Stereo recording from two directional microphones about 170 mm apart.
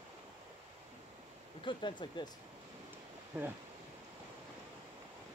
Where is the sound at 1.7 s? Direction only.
30° left (ahead or behind).